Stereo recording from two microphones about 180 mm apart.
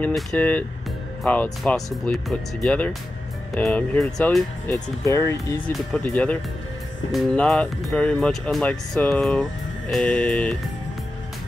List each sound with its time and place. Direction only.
0.0 s speech: 5° left (ahead or behind)
5.0 s speech: 15° left (ahead or behind)